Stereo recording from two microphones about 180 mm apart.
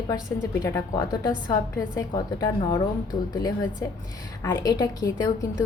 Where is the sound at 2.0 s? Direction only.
20° left (ahead or behind).